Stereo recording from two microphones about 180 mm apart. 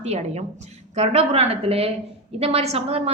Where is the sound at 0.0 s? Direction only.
35° right (ahead or behind).